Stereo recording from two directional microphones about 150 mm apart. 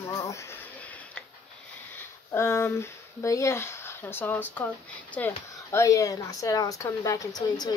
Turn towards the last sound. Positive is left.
turn(degrees=25)  # may be behind; listen again after turning